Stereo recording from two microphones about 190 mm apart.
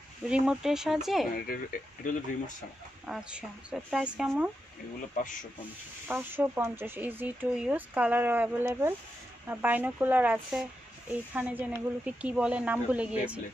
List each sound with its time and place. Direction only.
0.2 s speech: 5° right (ahead or behind)
1.3 s speech: 50° left (ahead or behind)
3.1 s speech: 5° right (ahead or behind)
6.0 s speech: 10° right (ahead or behind)